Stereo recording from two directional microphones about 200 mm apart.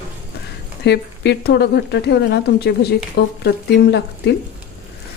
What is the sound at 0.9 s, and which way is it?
Speech, 55° left (ahead or behind).